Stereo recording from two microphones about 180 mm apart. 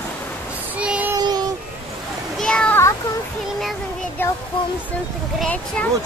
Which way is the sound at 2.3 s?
5° left (ahead or behind).